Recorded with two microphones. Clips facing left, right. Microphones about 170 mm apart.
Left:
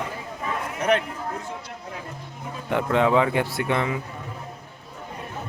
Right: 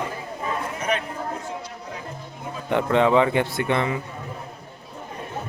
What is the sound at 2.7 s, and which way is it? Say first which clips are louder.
Speech: right 2 dB; 5° left (ahead or behind).